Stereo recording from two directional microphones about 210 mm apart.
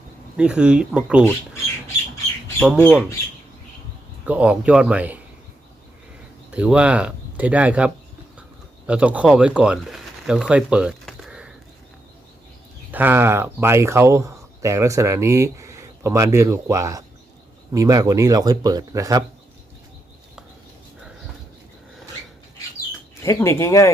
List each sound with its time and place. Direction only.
0.3 s speech: 5° right (ahead or behind)
2.6 s speech: 5° right (ahead or behind)
4.3 s speech: 5° right (ahead or behind)
6.5 s speech: 5° right (ahead or behind)
12.9 s speech: 10° right (ahead or behind)
23.2 s speech: 15° left (ahead or behind)